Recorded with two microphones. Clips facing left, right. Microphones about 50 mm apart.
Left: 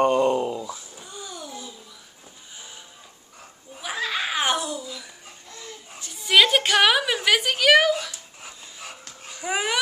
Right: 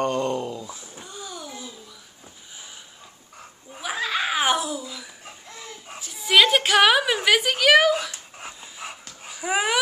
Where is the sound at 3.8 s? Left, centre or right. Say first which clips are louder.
Right 2 dB; centre.